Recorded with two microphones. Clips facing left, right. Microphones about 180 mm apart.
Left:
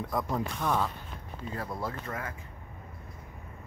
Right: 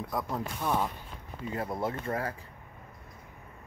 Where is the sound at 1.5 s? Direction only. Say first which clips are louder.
Right 3 dB; 25° right (ahead or behind).